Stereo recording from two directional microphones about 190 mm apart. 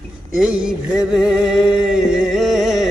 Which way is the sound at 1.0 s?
5° right (ahead or behind).